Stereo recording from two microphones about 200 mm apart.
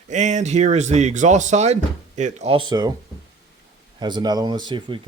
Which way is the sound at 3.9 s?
20° right (ahead or behind).